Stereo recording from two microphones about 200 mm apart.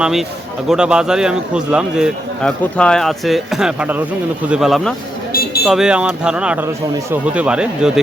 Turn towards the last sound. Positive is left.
turn(degrees=-5)  # may be behind; listen again after turning